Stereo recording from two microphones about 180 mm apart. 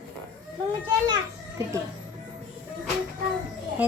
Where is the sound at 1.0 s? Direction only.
20° right (ahead or behind).